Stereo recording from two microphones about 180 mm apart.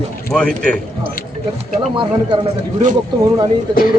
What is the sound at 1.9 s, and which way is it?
Speech, 25° right (ahead or behind).